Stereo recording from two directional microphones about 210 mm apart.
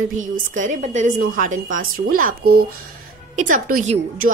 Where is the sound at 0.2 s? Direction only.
35° right (ahead or behind).